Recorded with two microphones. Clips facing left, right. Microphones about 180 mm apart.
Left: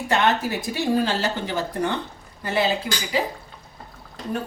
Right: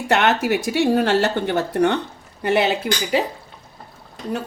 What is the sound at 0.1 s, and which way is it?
Speech, 75° right (ahead or behind).